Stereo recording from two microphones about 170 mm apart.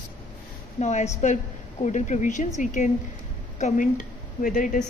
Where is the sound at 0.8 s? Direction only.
45° left (ahead or behind).